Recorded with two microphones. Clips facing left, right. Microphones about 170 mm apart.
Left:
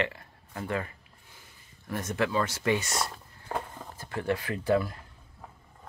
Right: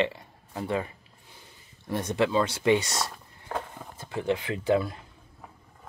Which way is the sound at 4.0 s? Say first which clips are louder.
Right 2 dB; 20° right (ahead or behind).